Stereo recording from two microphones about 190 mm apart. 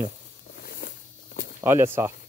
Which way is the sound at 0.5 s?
50° left (ahead or behind).